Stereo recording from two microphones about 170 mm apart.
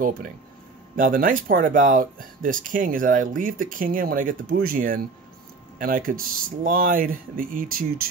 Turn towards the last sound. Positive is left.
turn(degrees=-55)  # may be behind; listen again after turning